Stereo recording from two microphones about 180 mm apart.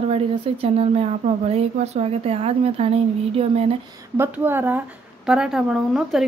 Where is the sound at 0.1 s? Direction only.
35° right (ahead or behind).